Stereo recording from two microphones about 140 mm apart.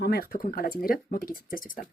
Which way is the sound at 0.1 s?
90° left.